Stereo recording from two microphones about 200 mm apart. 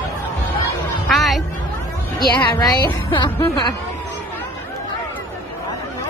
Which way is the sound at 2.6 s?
20° left (ahead or behind).